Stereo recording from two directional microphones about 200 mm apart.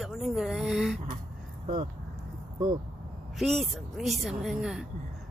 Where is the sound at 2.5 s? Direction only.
25° right (ahead or behind).